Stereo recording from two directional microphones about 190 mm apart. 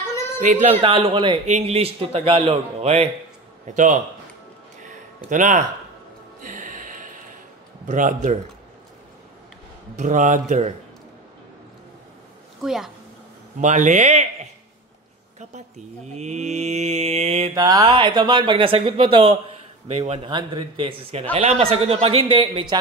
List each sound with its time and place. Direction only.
0.4 s a man's voice: 40° right (ahead or behind)
0.8 s a man's voice: 30° right (ahead or behind)
4.8 s a sound: 40° right (ahead or behind)
6.4 s music: 45° right (ahead or behind)
7.8 s a man's voice: 40° right (ahead or behind)
9.9 s a man's voice: 40° right (ahead or behind)
12.6 s a woman's voice: centre (ahead or behind)
13.6 s a man's voice: 40° right (ahead or behind)
16.1 s a man's voice: 35° right (ahead or behind)
17.6 s speech: 20° right (ahead or behind)